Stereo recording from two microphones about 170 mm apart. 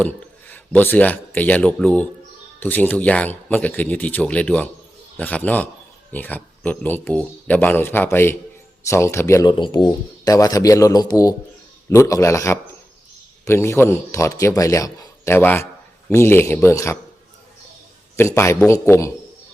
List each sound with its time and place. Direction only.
0.0 s speech: 10° left (ahead or behind)
18.2 s speech: 15° left (ahead or behind)